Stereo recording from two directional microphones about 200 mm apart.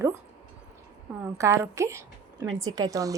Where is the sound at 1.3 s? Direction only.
15° right (ahead or behind).